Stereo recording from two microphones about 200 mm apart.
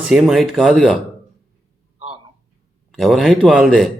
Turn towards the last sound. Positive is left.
turn(degrees=0)  # may be behind; listen again after turning